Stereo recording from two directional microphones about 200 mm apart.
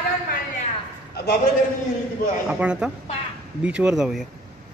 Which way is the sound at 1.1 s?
55° left (ahead or behind).